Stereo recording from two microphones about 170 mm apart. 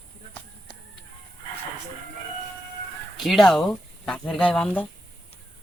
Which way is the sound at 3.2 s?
Centre (ahead or behind).